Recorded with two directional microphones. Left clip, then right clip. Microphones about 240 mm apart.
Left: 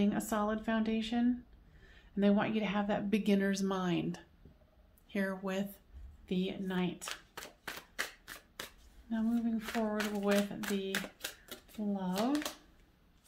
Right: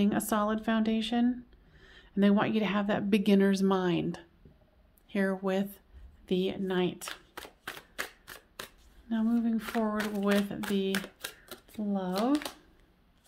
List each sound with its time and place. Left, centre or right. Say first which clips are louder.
0.0 s speech: right 5 dB; right
6.2 s shuffling cards: right 7 dB; right
9.1 s speech: right 5 dB; right
10.6 s a sound: right 5 dB; right
11.9 s speech: right 6 dB; right